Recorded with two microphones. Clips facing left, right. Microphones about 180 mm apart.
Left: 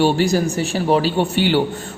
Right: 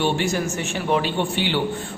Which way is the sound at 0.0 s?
35° left (ahead or behind).